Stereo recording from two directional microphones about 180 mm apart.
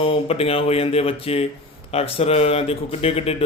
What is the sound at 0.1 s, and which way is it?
Speech, 35° left (ahead or behind).